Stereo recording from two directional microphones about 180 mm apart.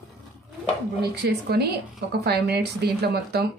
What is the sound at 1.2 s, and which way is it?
A woman's voice, 60° right (ahead or behind).